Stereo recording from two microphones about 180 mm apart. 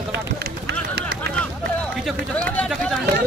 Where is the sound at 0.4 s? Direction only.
65° right (ahead or behind).